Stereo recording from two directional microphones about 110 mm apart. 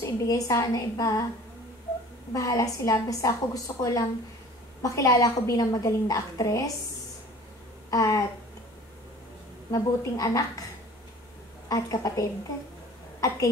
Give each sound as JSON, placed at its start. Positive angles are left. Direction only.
{"t": 0.0, "sound": "a woman's voice", "side_deg": 30}
{"t": 2.3, "sound": "a woman's voice", "side_deg": 30}
{"t": 7.9, "sound": "a sound", "side_deg": 30}
{"t": 9.7, "sound": "a woman's voice", "side_deg": 35}
{"t": 11.7, "sound": "a woman's voice", "side_deg": 30}